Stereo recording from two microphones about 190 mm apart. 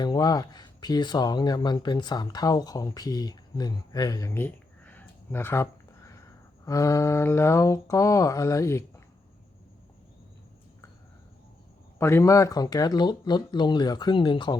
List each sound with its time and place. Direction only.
0.0 s speech: 20° left (ahead or behind)
6.7 s mantra: 15° left (ahead or behind)
11.9 s speech: 15° left (ahead or behind)